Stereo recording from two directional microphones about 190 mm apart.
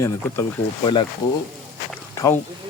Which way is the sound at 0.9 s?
25° left (ahead or behind).